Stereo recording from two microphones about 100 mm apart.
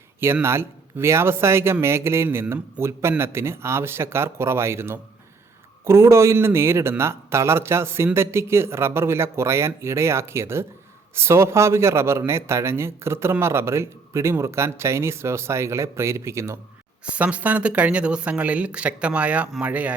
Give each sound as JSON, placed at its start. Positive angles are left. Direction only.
{"t": 0.4, "sound": "a man's voice", "side_deg": -25}
{"t": 17.1, "sound": "speech", "side_deg": -15}